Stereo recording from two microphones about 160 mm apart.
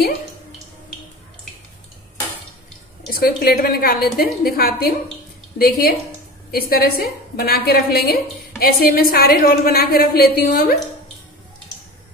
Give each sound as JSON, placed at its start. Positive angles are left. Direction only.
{"t": 3.1, "sound": "a woman's voice", "side_deg": 65}